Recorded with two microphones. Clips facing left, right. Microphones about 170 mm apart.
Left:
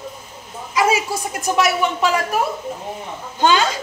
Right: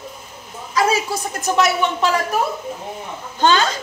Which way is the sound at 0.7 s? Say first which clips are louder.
Even; 15° left (ahead or behind).